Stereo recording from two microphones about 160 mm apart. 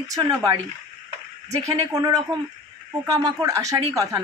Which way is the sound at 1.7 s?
20° right (ahead or behind).